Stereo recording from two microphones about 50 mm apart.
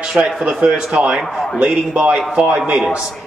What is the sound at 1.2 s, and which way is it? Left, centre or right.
Speech, centre.